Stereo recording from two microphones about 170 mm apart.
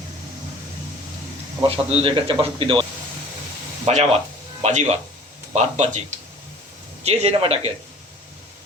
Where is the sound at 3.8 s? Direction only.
45° right (ahead or behind).